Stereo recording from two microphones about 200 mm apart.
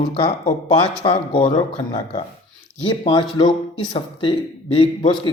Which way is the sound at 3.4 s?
25° left (ahead or behind).